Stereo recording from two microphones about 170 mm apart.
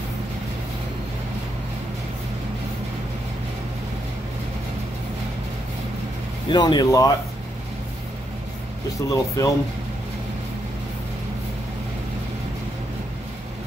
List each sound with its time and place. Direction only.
6.5 s speech: 25° left (ahead or behind)
8.9 s speech: 20° left (ahead or behind)